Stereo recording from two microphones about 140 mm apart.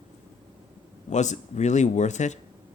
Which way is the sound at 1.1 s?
60° left (ahead or behind).